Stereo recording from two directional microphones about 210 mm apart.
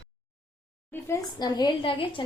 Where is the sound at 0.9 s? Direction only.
15° left (ahead or behind).